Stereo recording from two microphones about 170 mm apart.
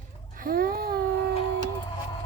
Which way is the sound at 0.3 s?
60° right (ahead or behind).